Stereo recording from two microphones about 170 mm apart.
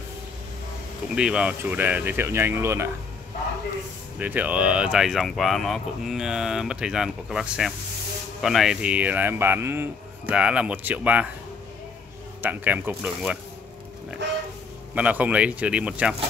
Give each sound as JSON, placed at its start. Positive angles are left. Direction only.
{"t": 1.1, "sound": "speech", "side_deg": -5}
{"t": 4.2, "sound": "speech", "side_deg": -10}
{"t": 12.4, "sound": "speech", "side_deg": -10}
{"t": 14.2, "sound": "speech", "side_deg": -90}
{"t": 15.0, "sound": "speech", "side_deg": -10}